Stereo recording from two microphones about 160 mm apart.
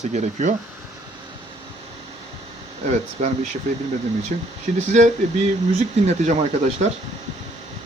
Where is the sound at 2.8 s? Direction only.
45° right (ahead or behind).